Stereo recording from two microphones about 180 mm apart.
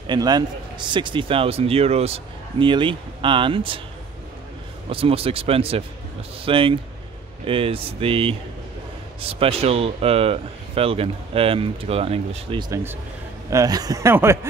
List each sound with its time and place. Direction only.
0.0 s a man's voice: 25° right (ahead or behind)
4.8 s a man's voice: 30° right (ahead or behind); by 14.5 s 15° right (ahead or behind)